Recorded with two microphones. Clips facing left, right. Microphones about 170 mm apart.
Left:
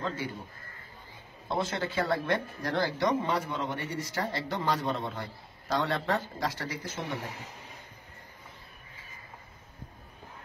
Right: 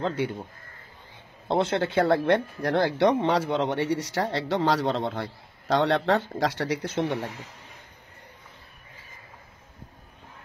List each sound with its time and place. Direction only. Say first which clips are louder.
0.0 s speech: right 7 dB; 65° right (ahead or behind)
1.5 s speech: right 7 dB; 65° right (ahead or behind)